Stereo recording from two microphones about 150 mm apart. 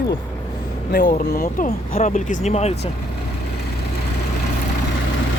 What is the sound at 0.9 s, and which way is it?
Speech, 65° left (ahead or behind).